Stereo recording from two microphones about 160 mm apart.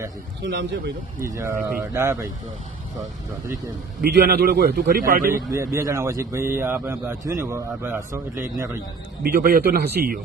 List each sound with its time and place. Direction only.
0.4 s speech: 90° right
1.2 s a man's voice: 20° right (ahead or behind)
4.0 s a man's voice: 90° right; by 5.3 s 60° right (ahead or behind)
5.5 s a man's voice: 20° right (ahead or behind)
9.2 s a man's voice: 70° right (ahead or behind); by 10.2 s 90° right